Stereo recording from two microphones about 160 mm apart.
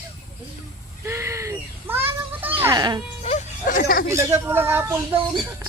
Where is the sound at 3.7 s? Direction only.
65° left (ahead or behind).